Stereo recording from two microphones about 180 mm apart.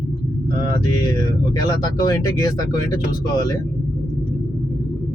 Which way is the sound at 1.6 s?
20° left (ahead or behind).